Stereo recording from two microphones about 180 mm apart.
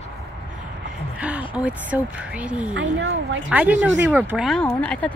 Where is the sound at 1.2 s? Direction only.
5° right (ahead or behind).